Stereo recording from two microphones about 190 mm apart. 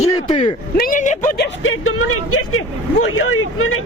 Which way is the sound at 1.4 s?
90° left.